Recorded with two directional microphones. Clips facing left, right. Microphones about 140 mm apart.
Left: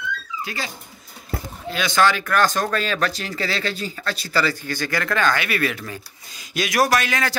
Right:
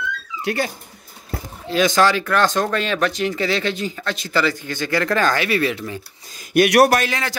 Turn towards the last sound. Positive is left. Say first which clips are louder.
# right 1 dB
turn(degrees=-35)  # may be behind; listen again after turning